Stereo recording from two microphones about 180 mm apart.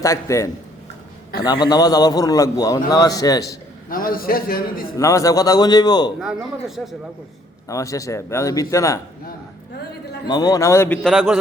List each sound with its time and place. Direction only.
0.0 s speech: 15° left (ahead or behind)
1.5 s a man's voice: 25° left (ahead or behind)
3.8 s a man's voice: 55° left (ahead or behind)
4.9 s a man's voice: 15° left (ahead or behind)
6.1 s speech: centre (ahead or behind)
7.7 s speech: 20° left (ahead or behind)
10.2 s speech: 20° left (ahead or behind)
11.0 s speech: 5° right (ahead or behind)